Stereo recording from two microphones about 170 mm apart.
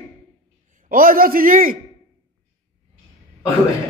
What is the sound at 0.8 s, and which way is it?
Speech, 55° right (ahead or behind).